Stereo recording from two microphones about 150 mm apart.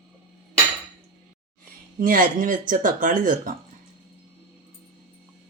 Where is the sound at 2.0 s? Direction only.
65° right (ahead or behind).